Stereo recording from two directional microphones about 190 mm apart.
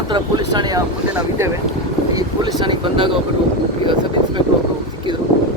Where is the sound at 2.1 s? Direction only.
20° right (ahead or behind).